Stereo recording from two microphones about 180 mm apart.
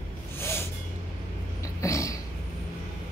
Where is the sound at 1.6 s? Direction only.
15° left (ahead or behind).